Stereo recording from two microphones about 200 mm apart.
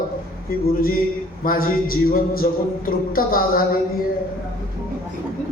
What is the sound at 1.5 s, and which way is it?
A man's voice, 45° left (ahead or behind).